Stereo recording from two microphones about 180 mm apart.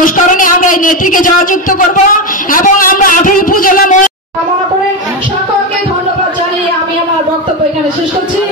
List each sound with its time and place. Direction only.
0.0 s a man's voice: 50° left (ahead or behind)